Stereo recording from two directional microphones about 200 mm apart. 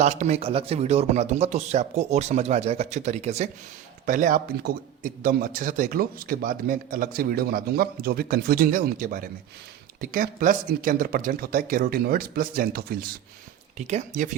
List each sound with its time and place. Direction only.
0.0 s a man's voice: 35° right (ahead or behind)
13.7 s speech: 35° right (ahead or behind)